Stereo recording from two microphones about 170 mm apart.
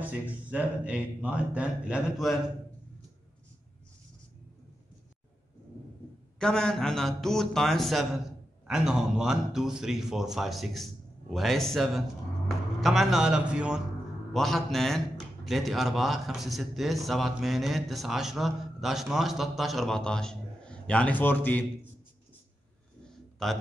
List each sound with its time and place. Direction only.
0.0 s speech: 5° right (ahead or behind)
6.4 s a man's voice: 5° left (ahead or behind)
23.4 s a man's voice: centre (ahead or behind)